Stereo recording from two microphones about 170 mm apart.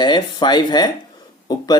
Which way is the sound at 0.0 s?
25° left (ahead or behind).